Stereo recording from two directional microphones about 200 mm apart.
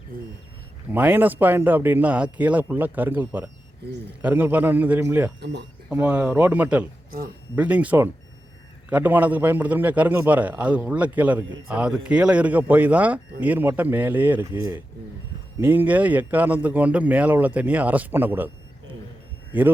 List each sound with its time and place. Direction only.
0.9 s speech: 10° right (ahead or behind)
5.4 s speech: 60° right (ahead or behind)
5.9 s speech: 5° right (ahead or behind)